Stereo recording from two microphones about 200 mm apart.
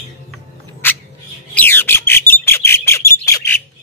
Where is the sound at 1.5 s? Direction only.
10° left (ahead or behind).